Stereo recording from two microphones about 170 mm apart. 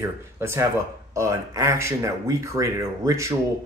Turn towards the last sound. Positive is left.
turn(degrees=-15)  # may be behind; listen again after turning